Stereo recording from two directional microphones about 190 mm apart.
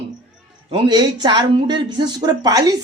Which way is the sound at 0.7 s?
25° right (ahead or behind).